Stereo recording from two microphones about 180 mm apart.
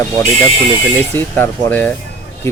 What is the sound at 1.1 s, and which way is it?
Speech, 10° left (ahead or behind).